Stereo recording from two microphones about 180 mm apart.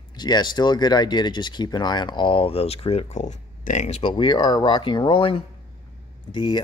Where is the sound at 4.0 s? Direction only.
25° left (ahead or behind).